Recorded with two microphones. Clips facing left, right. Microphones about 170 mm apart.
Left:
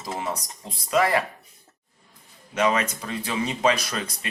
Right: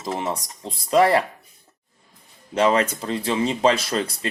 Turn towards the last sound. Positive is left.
turn(degrees=-30)  # may be behind; listen again after turning